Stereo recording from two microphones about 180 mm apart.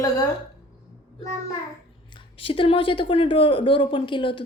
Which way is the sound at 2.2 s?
30° left (ahead or behind).